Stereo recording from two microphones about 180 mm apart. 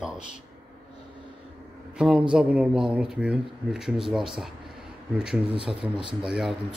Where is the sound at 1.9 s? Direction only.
5° right (ahead or behind).